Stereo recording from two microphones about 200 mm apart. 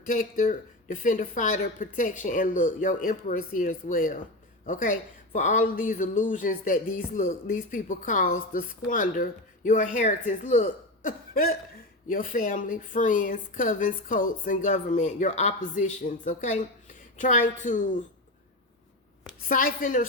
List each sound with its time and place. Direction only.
0.0 s speech: 45° left (ahead or behind)
19.5 s a woman's voice: 45° left (ahead or behind)